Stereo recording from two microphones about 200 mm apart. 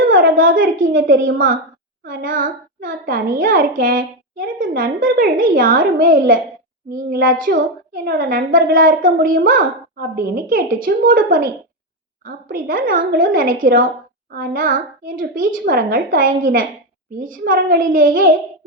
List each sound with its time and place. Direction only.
0.2 s a sound: 45° right (ahead or behind)
0.6 s a woman's voice: 70° right (ahead or behind)
2.2 s a child's voice: 45° right (ahead or behind)